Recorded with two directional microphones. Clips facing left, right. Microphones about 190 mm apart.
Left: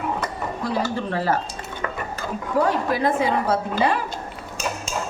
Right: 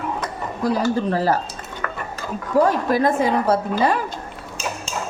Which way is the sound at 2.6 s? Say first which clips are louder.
Right 3 dB; 40° right (ahead or behind).